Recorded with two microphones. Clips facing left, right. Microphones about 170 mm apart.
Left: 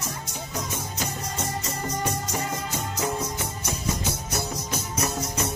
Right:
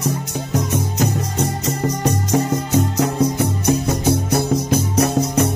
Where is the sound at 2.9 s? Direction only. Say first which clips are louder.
Right 11 dB; 65° right (ahead or behind).